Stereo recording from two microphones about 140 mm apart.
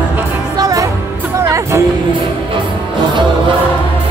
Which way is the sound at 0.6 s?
25° right (ahead or behind).